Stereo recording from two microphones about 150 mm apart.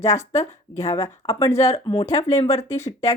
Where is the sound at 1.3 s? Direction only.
40° left (ahead or behind).